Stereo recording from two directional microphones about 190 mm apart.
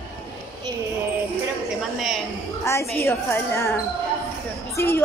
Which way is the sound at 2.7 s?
15° left (ahead or behind).